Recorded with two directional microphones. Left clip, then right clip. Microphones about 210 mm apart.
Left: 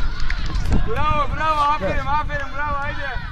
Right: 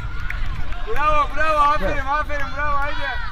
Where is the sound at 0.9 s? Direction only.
50° right (ahead or behind).